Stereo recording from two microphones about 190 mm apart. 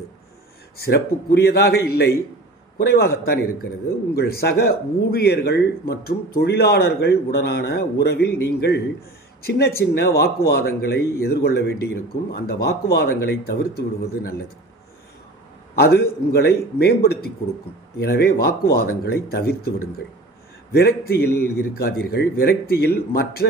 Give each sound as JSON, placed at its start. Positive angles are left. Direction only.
{"t": 0.7, "sound": "a man's voice", "side_deg": 55}
{"t": 15.7, "sound": "a man's voice", "side_deg": 55}
{"t": 20.7, "sound": "a man's voice", "side_deg": 55}